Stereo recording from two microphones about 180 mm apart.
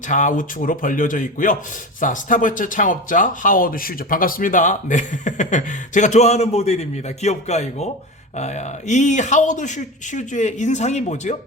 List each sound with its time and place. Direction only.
0.1 s a man's voice: 45° left (ahead or behind)